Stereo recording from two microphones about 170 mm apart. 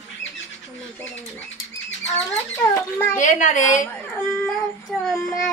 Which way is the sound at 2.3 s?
15° left (ahead or behind).